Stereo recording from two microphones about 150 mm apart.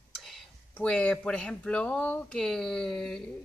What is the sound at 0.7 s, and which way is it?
Speech, 10° left (ahead or behind).